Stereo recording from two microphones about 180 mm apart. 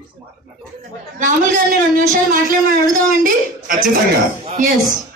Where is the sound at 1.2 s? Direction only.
50° right (ahead or behind).